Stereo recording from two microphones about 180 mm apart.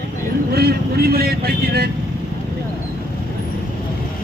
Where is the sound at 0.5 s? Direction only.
60° right (ahead or behind).